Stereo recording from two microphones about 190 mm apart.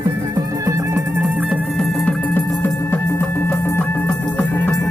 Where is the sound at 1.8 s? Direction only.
10° left (ahead or behind).